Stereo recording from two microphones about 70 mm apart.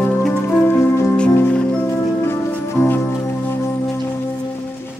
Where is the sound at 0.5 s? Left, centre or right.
Left.